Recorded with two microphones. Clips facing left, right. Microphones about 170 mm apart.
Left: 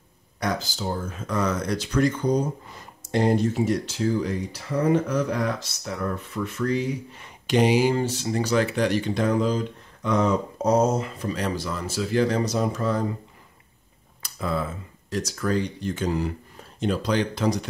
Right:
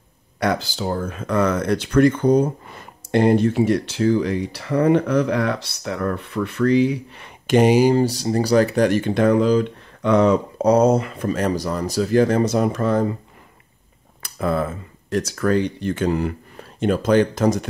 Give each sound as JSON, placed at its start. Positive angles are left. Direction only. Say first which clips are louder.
{"t": 0.4, "sound": "speech", "louder": "right 6 dB", "side_deg": -65}
{"t": 7.4, "sound": "speech", "louder": "right 5 dB", "side_deg": -50}
{"t": 14.2, "sound": "speech", "louder": "right 6 dB", "side_deg": -55}